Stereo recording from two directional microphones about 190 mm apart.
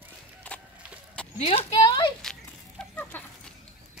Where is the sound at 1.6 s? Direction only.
20° left (ahead or behind).